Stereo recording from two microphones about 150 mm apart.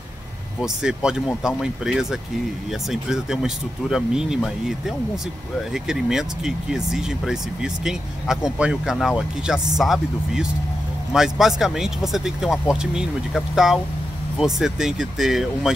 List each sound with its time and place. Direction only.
0.6 s speech: 5° right (ahead or behind)